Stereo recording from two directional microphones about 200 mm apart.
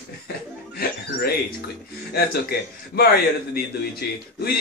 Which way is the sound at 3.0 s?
50° left (ahead or behind).